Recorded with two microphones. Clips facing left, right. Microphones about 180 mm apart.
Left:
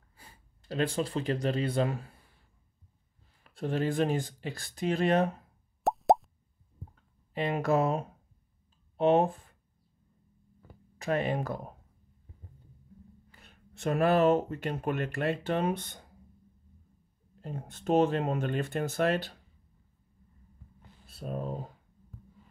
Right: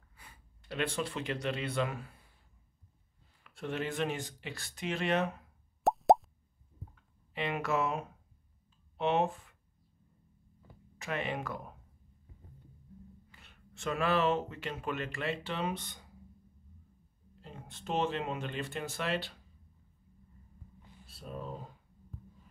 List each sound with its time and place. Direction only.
0.2 s speech: 35° left (ahead or behind)
3.4 s speech: 35° left (ahead or behind)
5.9 s plop: centre (ahead or behind)
7.0 s speech: 35° left (ahead or behind)
11.0 s speech: 40° left (ahead or behind)
13.3 s a sound: 40° left (ahead or behind)
13.7 s speech: 50° left (ahead or behind)
17.4 s speech: 45° left (ahead or behind)
21.1 s speech: 50° left (ahead or behind)